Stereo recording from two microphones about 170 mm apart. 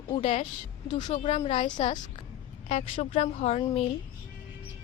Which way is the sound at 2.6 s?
35° left (ahead or behind).